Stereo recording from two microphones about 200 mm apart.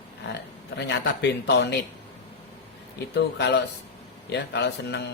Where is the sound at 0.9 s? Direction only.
60° left (ahead or behind).